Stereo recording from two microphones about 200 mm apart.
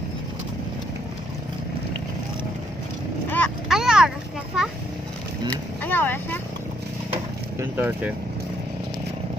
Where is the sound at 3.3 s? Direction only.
5° left (ahead or behind).